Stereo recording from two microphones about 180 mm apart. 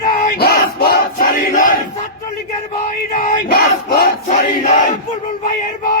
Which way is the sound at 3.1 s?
55° left (ahead or behind).